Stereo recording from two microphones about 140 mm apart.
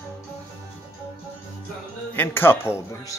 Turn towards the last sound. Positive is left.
turn(degrees=20)  # may be behind; listen again after turning